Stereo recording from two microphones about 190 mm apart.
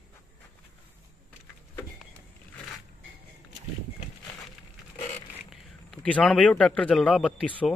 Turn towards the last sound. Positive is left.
turn(degrees=5)  # may be behind; listen again after turning